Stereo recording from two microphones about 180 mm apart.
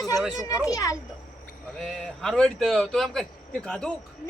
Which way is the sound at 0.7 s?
20° left (ahead or behind).